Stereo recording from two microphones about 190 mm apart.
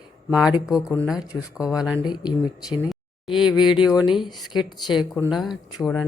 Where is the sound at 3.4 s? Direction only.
25° left (ahead or behind).